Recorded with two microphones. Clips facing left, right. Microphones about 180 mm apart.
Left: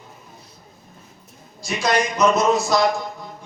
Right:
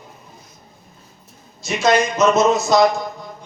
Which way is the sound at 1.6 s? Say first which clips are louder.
Right 4 dB; 25° right (ahead or behind).